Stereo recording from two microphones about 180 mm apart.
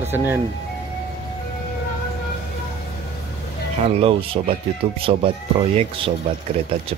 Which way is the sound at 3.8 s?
35° right (ahead or behind).